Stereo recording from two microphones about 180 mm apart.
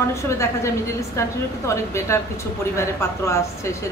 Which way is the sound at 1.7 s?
15° left (ahead or behind).